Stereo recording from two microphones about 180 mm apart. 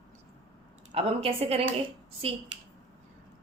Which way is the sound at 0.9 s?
35° right (ahead or behind).